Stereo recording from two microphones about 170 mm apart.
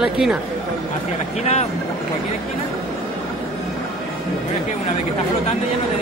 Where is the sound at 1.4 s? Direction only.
40° left (ahead or behind).